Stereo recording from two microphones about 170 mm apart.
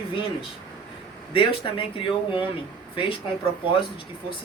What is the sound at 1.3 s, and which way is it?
Speech, 30° left (ahead or behind).